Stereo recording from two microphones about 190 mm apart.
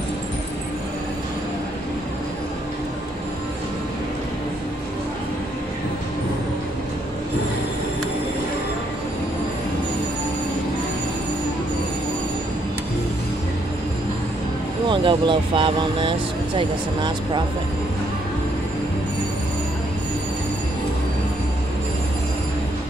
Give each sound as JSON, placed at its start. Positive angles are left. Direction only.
{"t": 14.9, "sound": "speech", "side_deg": -25}